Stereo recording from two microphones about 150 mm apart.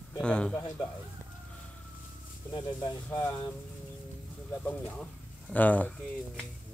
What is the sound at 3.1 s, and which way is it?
Speech, 20° left (ahead or behind).